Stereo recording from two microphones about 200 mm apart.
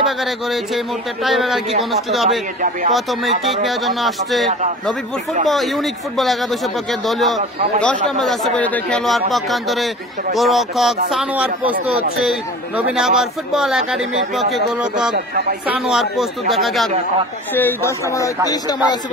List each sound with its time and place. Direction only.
0.0 s speech: centre (ahead or behind)
4.5 s a man's voice: 35° right (ahead or behind)
5.5 s speech: centre (ahead or behind)
15.1 s speech: 50° right (ahead or behind)
15.6 s speech: 5° right (ahead or behind)
17.6 s speech: 10° left (ahead or behind)